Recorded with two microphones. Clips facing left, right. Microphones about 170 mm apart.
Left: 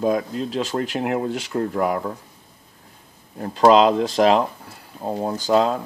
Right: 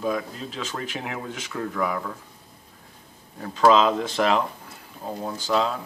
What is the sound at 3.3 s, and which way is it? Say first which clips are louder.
Speech: left 4 dB; 35° left (ahead or behind).